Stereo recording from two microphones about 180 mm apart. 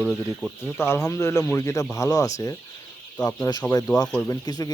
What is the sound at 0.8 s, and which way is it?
Speech, 15° left (ahead or behind).